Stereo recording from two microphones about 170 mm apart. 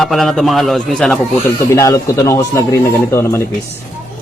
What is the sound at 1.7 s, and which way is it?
Speech, 15° left (ahead or behind).